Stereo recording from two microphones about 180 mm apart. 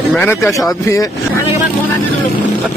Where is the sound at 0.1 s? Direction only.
10° left (ahead or behind).